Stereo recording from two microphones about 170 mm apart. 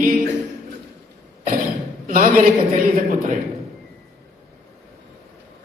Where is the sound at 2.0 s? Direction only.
55° right (ahead or behind).